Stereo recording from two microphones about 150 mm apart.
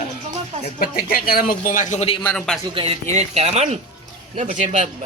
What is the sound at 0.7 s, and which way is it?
Speech, 80° left.